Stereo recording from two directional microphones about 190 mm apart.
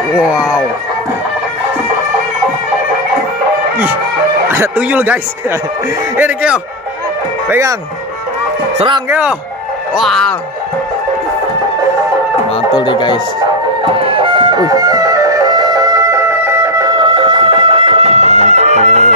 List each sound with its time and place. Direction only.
0.2 s speech: 5° right (ahead or behind)
4.5 s a man's voice: 10° right (ahead or behind)
8.7 s speech: 25° right (ahead or behind)
9.9 s speech: centre (ahead or behind)
12.7 s speech: 25° left (ahead or behind)
13.9 s music: 30° right (ahead or behind)